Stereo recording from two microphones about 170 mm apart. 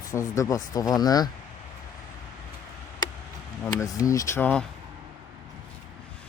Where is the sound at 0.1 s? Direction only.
15° left (ahead or behind).